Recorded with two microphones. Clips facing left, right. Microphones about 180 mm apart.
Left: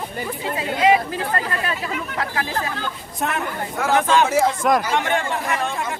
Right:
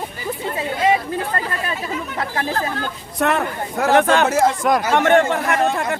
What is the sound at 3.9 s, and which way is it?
Speech, 65° right (ahead or behind).